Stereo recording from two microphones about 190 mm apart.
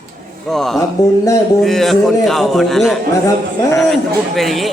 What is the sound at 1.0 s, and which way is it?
Speech, 20° left (ahead or behind).